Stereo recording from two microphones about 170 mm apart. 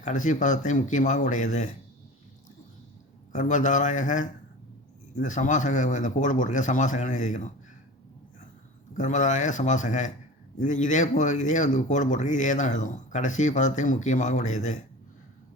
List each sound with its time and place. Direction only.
0.0 s speech: 45° left (ahead or behind)
3.3 s speech: 45° left (ahead or behind)
9.0 s speech: 45° left (ahead or behind)